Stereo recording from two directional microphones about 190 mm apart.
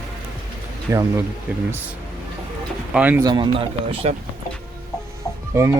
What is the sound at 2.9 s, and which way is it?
Speech, 10° right (ahead or behind).